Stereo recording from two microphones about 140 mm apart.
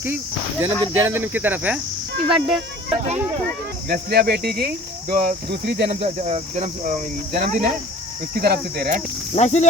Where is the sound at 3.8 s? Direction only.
90° right.